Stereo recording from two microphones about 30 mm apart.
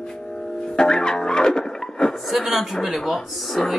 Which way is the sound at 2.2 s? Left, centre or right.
Centre.